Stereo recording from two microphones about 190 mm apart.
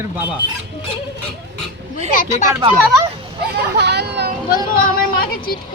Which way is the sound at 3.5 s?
60° right (ahead or behind).